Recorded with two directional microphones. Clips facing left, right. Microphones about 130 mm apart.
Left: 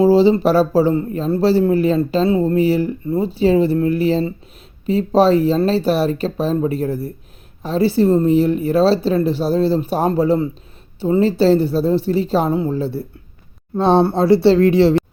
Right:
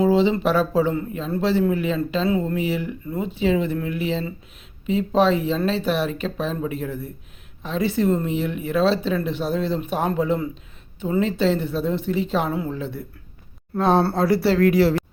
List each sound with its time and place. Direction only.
0.0 s speech: 35° left (ahead or behind)